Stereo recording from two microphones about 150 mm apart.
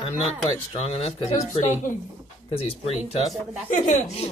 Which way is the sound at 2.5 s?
40° left (ahead or behind).